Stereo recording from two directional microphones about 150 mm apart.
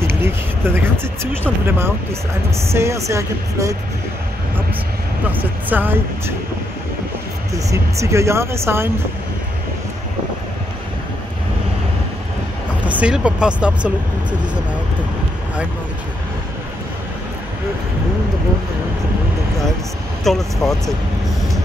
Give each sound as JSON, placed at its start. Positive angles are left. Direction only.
{"t": 0.0, "sound": "speech", "side_deg": -15}
{"t": 5.3, "sound": "speech", "side_deg": -10}
{"t": 7.5, "sound": "speech", "side_deg": -20}
{"t": 12.8, "sound": "speech", "side_deg": -10}
{"t": 20.2, "sound": "speech", "side_deg": 0}